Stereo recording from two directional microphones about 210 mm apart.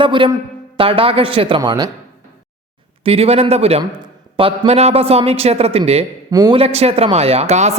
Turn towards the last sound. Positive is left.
turn(degrees=-30)  # may be behind; listen again after turning